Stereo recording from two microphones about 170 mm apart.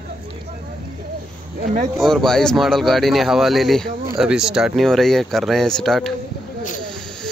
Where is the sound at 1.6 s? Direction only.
50° right (ahead or behind).